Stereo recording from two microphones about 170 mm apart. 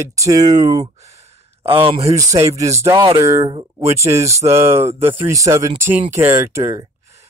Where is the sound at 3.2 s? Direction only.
15° right (ahead or behind).